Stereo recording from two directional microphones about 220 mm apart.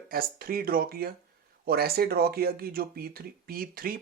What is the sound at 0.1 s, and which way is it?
Speech, 40° right (ahead or behind).